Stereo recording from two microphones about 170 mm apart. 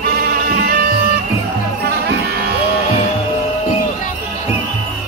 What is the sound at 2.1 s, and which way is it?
Music, 70° right (ahead or behind).